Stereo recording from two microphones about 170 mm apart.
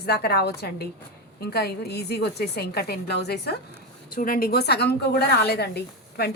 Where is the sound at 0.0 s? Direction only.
65° left (ahead or behind).